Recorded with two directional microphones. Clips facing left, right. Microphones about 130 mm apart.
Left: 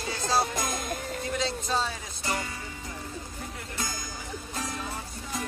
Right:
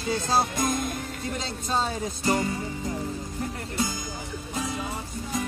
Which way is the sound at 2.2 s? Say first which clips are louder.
Right 7 dB; 30° right (ahead or behind).